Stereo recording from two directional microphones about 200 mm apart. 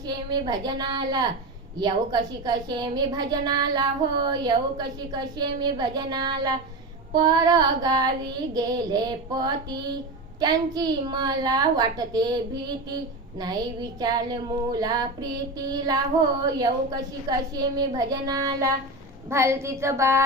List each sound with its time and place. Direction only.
0.1 s a woman's voice: 20° right (ahead or behind)
14.0 s a woman's voice: 20° right (ahead or behind)